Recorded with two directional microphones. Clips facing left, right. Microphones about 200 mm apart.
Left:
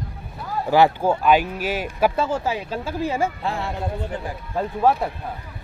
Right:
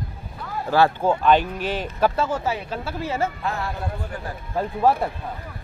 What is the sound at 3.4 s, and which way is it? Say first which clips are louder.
Speech: left 1 dB; 25° left (ahead or behind).